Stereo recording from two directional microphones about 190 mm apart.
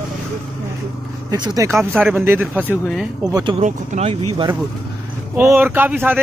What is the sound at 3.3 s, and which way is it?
Speech, 20° right (ahead or behind).